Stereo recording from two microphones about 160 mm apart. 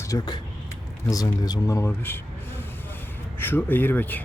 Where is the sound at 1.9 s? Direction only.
15° left (ahead or behind).